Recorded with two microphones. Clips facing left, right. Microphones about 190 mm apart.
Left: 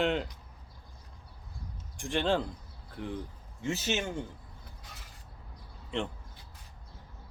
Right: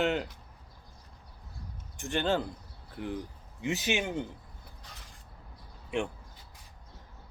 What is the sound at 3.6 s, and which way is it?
Speech, 15° right (ahead or behind).